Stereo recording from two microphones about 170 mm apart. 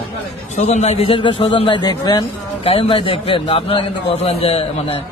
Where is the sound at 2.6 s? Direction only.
35° left (ahead or behind).